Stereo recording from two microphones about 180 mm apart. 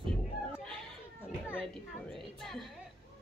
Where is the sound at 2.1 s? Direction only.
Centre (ahead or behind).